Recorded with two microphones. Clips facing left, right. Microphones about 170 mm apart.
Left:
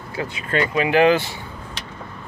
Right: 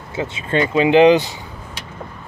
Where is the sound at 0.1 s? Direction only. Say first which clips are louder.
Right 3 dB; 25° right (ahead or behind).